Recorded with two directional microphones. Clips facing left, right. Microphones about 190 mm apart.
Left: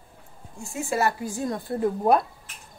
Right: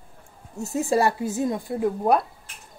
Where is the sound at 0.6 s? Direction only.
40° right (ahead or behind); by 1.6 s 20° right (ahead or behind).